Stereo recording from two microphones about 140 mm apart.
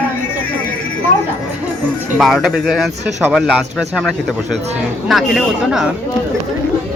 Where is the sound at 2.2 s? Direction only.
Centre (ahead or behind).